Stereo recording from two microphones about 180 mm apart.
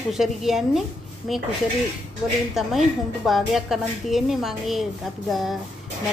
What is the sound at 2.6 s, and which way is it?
A woman's voice, centre (ahead or behind).